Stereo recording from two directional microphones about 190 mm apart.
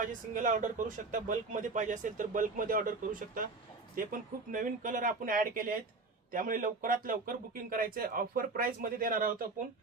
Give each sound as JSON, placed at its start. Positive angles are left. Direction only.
{"t": 0.0, "sound": "speech", "side_deg": -40}